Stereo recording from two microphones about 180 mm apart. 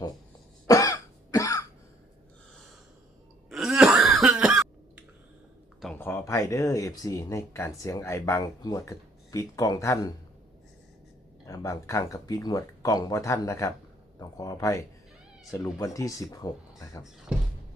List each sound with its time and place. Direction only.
0.7 s cough: 20° left (ahead or behind)
3.5 s cough: 5° right (ahead or behind)
5.8 s speech: 10° left (ahead or behind)
11.4 s speech: 15° left (ahead or behind)